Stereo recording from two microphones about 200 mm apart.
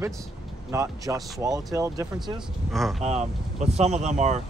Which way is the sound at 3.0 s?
35° right (ahead or behind).